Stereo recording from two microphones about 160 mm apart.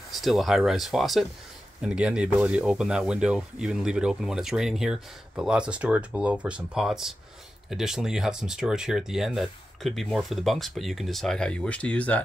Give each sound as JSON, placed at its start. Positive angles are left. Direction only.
{"t": 0.1, "sound": "speech", "side_deg": 0}